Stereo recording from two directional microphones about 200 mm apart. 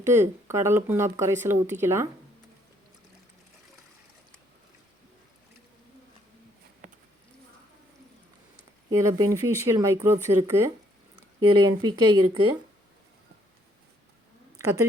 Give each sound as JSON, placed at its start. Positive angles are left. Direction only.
{"t": 0.0, "sound": "speech", "side_deg": -10}
{"t": 8.9, "sound": "speech", "side_deg": -15}